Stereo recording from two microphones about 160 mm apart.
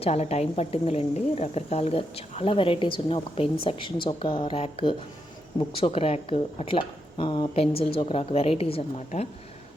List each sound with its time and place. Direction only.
0.0 s a woman's voice: 40° left (ahead or behind)